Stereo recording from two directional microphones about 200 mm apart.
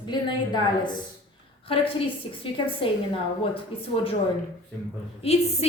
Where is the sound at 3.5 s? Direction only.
30° left (ahead or behind).